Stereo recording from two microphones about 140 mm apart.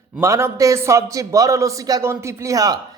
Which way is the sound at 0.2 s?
20° right (ahead or behind).